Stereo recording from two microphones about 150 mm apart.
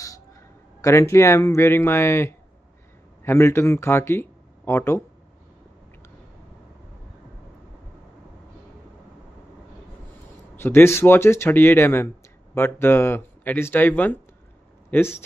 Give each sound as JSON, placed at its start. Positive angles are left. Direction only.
{"t": 0.7, "sound": "speech", "side_deg": 20}
{"t": 10.5, "sound": "speech", "side_deg": 15}